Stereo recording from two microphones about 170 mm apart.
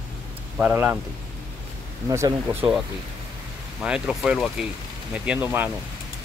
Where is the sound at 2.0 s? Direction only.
20° right (ahead or behind).